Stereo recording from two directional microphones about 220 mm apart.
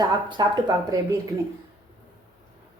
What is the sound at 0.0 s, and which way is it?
Speech, 20° right (ahead or behind).